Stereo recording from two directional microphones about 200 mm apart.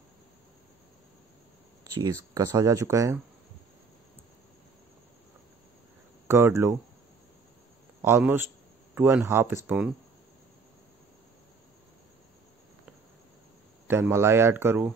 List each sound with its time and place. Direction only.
1.9 s speech: 15° right (ahead or behind)
6.2 s speech: 15° right (ahead or behind)
8.0 s speech: 10° right (ahead or behind)
13.8 s speech: 10° right (ahead or behind)